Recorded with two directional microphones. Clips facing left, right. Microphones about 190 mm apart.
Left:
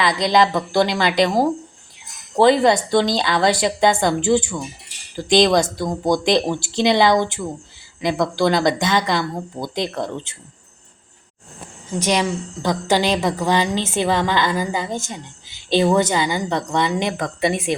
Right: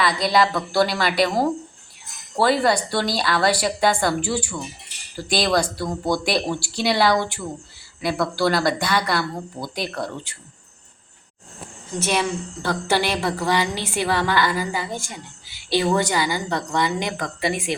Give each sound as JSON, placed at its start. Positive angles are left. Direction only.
{"t": 0.0, "sound": "a woman's voice", "side_deg": 20}
{"t": 11.9, "sound": "a woman's voice", "side_deg": 15}